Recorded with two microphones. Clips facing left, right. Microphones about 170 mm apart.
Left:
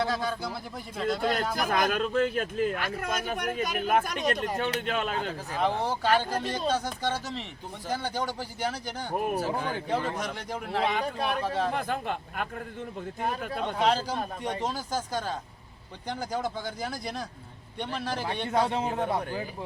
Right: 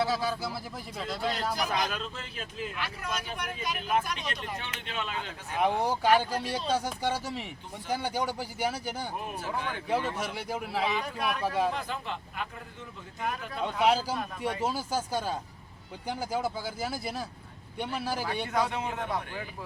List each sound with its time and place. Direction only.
0.0 s speech: 5° right (ahead or behind)
1.2 s a man's voice: 50° left (ahead or behind)
5.5 s speech: 10° right (ahead or behind)
9.3 s a man's voice: 40° left (ahead or behind)
9.9 s speech: 10° right (ahead or behind)
11.0 s a man's voice: 30° left (ahead or behind)
11.4 s speech: 10° right (ahead or behind)
11.7 s a man's voice: 50° left (ahead or behind)
13.8 s speech: 10° right (ahead or behind)
18.4 s a man's voice: 30° left (ahead or behind)